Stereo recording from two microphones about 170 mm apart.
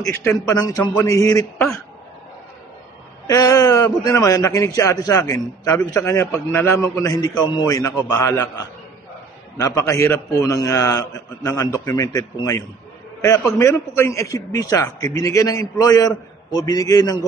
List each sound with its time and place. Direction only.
0.0 s a man's voice: 15° left (ahead or behind)
3.3 s a man's voice: 20° left (ahead or behind)